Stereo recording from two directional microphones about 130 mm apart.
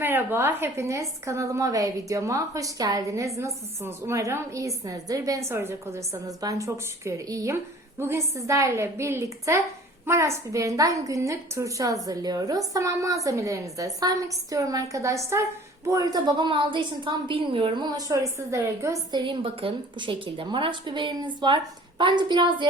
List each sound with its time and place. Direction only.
0.0 s a woman's voice: 15° right (ahead or behind)
19.1 s a woman's voice: 40° right (ahead or behind)